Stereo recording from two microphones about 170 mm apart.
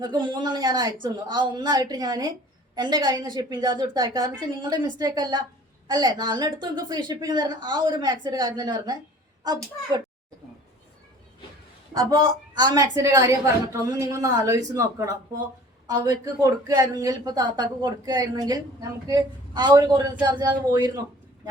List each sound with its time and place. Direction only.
0.0 s speech: 25° right (ahead or behind)
11.9 s speech: 25° right (ahead or behind)